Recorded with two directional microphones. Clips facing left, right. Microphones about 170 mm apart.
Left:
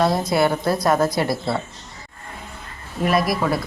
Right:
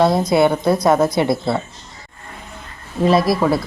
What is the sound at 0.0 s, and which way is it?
Speech, 20° right (ahead or behind).